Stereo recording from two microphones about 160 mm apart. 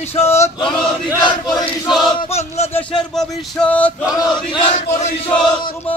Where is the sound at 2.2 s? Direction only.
40° left (ahead or behind).